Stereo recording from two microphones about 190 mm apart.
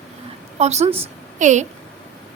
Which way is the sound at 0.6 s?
35° right (ahead or behind).